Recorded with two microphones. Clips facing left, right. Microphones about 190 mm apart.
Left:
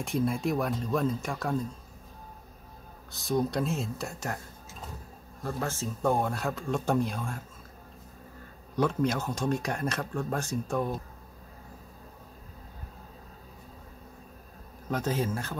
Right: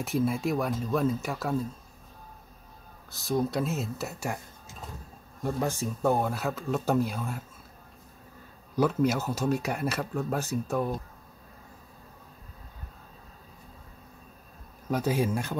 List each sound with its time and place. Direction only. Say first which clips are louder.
0.0 s speech: right 1 dB; 5° right (ahead or behind)
3.1 s speech: even; centre (ahead or behind)
5.4 s speech: right 4 dB; 15° right (ahead or behind)
6.0 s speech: right 1 dB; 5° right (ahead or behind)
8.7 s speech: right 2 dB; 5° right (ahead or behind)
14.9 s speech: right 3 dB; 10° right (ahead or behind)